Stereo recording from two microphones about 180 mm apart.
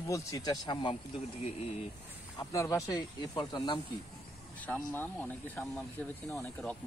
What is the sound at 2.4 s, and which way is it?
Speech, 15° left (ahead or behind).